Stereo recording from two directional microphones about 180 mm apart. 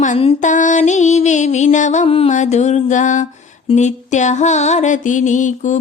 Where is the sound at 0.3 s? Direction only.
45° left (ahead or behind).